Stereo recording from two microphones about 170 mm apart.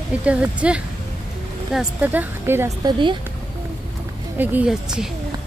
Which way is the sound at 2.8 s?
30° right (ahead or behind).